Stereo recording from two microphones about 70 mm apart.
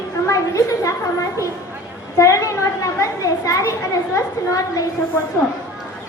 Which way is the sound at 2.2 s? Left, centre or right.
Left.